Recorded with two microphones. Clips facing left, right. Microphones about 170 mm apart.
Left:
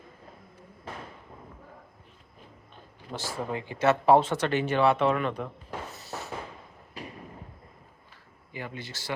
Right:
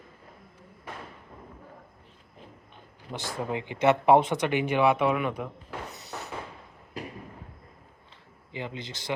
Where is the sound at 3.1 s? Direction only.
15° right (ahead or behind).